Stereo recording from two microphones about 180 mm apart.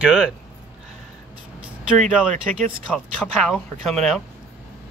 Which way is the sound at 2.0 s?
5° left (ahead or behind).